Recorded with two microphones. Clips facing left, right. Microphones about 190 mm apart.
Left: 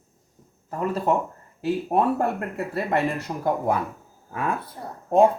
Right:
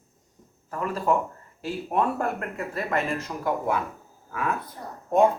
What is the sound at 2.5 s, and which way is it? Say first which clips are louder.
Speech: left 3 dB; 35° left (ahead or behind).